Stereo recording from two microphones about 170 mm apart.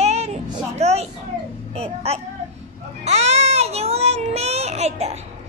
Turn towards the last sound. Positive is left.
turn(degrees=-40)  # may be behind; listen again after turning